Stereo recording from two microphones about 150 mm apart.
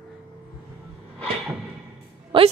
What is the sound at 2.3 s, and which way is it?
Speech, 35° right (ahead or behind).